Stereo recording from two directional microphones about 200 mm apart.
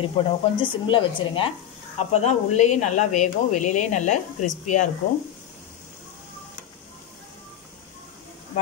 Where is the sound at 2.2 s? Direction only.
35° left (ahead or behind).